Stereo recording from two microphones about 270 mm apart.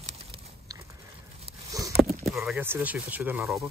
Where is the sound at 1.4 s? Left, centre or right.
Centre.